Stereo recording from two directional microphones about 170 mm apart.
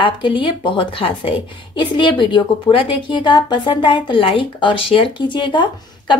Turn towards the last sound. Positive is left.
turn(degrees=30)  # may be behind; listen again after turning